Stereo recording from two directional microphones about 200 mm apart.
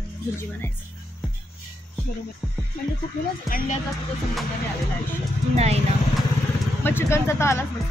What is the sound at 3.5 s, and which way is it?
Speech, 45° left (ahead or behind).